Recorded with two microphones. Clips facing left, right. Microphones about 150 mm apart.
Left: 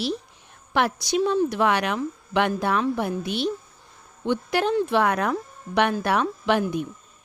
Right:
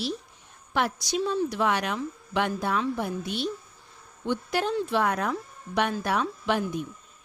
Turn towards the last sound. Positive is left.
turn(degrees=70)  # may be behind; listen again after turning